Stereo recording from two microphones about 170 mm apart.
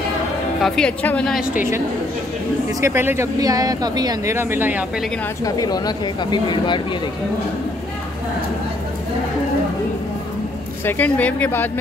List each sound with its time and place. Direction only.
0.6 s a woman's voice: 5° left (ahead or behind)
2.8 s speech: 15° right (ahead or behind)
5.4 s speech: 20° left (ahead or behind)
10.9 s speech: 10° left (ahead or behind)